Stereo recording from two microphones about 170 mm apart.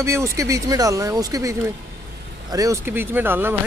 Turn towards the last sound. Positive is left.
turn(degrees=-10)  # may be behind; listen again after turning